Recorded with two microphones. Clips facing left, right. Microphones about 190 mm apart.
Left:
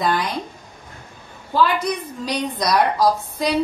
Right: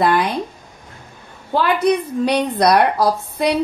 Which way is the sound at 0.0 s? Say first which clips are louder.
Right 5 dB; 65° right (ahead or behind).